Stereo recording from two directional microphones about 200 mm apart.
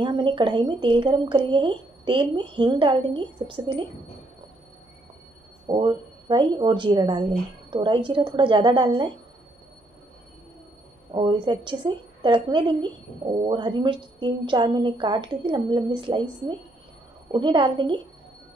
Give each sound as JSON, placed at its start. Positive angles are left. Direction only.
{"t": 0.0, "sound": "a woman's voice", "side_deg": -25}
{"t": 5.7, "sound": "a woman's voice", "side_deg": -20}
{"t": 11.1, "sound": "a woman's voice", "side_deg": -25}